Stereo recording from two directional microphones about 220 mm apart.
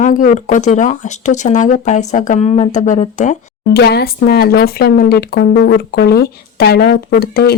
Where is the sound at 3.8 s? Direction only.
45° left (ahead or behind).